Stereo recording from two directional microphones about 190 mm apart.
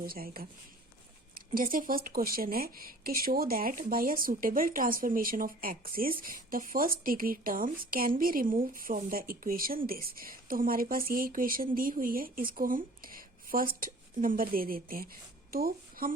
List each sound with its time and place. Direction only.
0.0 s a woman's voice: 50° right (ahead or behind)
1.5 s a woman's voice: 45° right (ahead or behind)